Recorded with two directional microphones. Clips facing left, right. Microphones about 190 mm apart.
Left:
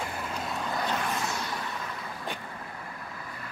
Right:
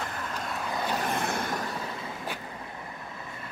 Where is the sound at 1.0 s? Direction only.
55° right (ahead or behind).